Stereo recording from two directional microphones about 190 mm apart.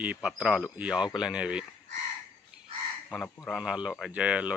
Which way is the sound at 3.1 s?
Centre (ahead or behind).